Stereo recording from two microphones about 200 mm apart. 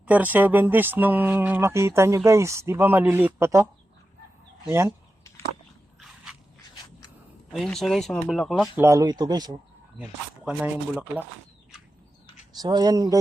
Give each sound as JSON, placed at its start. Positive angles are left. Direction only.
{"t": 0.0, "sound": "speech", "side_deg": -10}
{"t": 4.7, "sound": "speech", "side_deg": -15}
{"t": 7.5, "sound": "speech", "side_deg": 0}
{"t": 8.8, "sound": "speech", "side_deg": -15}
{"t": 10.0, "sound": "speech", "side_deg": -5}
{"t": 12.5, "sound": "speech", "side_deg": -20}